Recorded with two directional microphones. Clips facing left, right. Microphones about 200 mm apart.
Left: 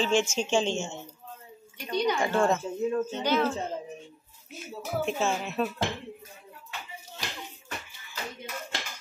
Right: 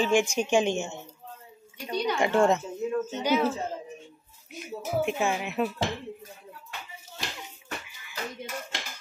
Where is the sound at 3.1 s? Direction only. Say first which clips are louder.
Right 1 dB; 10° right (ahead or behind).